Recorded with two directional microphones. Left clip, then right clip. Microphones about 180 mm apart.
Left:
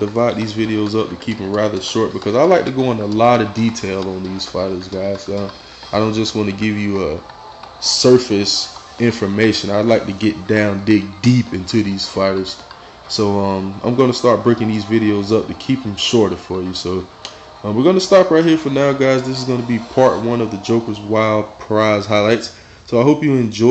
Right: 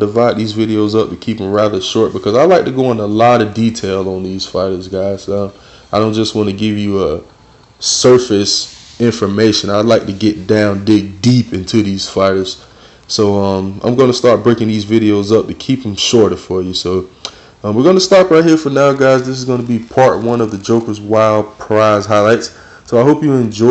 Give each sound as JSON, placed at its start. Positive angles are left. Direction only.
{"t": 0.0, "sound": "speech", "side_deg": -15}
{"t": 8.4, "sound": "speech", "side_deg": -10}